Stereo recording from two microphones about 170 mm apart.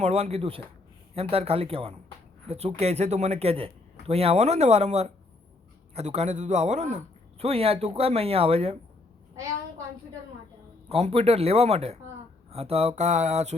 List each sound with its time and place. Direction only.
0.0 s a man's voice: 35° right (ahead or behind)
10.8 s a man's voice: 35° right (ahead or behind)